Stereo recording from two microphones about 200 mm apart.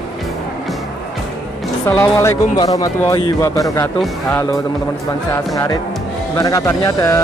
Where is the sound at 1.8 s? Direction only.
10° left (ahead or behind).